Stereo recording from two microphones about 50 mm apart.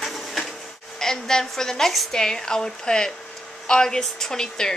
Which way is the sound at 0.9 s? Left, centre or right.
Centre.